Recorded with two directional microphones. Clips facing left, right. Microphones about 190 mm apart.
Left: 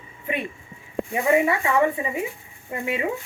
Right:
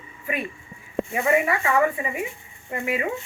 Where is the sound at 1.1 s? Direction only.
25° left (ahead or behind).